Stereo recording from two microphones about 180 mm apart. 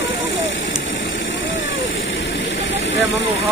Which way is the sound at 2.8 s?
90° left.